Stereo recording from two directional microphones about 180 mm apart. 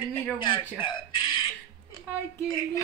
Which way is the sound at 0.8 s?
25° left (ahead or behind).